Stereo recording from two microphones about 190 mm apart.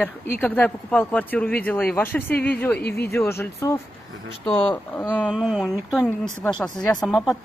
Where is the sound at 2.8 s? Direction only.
55° left (ahead or behind).